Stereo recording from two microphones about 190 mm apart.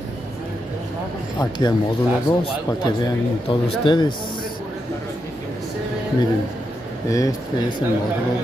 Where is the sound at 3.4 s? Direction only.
30° left (ahead or behind).